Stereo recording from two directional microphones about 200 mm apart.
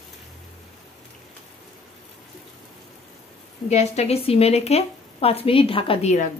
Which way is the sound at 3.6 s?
35° left (ahead or behind).